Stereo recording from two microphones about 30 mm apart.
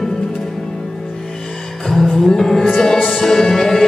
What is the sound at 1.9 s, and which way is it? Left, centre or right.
Music, centre.